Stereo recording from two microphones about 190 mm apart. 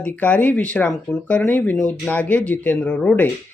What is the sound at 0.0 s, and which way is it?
Speech, 5° left (ahead or behind).